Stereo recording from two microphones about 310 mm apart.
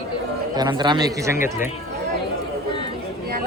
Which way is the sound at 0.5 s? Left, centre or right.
Centre.